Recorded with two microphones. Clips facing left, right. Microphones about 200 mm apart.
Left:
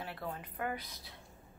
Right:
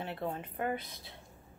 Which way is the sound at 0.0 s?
25° right (ahead or behind).